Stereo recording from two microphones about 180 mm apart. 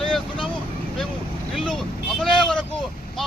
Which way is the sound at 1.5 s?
Centre (ahead or behind).